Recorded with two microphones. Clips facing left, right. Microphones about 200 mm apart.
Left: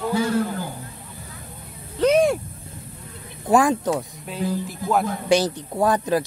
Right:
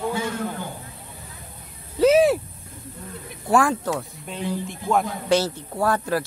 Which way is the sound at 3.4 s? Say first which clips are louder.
Left 2 dB; 20° left (ahead or behind).